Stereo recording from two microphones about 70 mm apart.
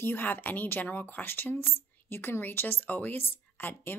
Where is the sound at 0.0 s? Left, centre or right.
Left.